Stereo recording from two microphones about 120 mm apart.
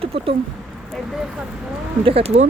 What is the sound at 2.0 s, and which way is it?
Speech, 55° right (ahead or behind).